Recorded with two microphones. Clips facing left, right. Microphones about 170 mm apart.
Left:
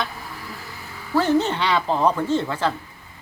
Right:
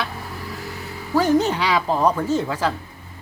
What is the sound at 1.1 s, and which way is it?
Speech, 10° right (ahead or behind).